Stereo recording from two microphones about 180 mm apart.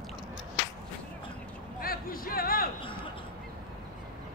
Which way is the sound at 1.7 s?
55° left (ahead or behind).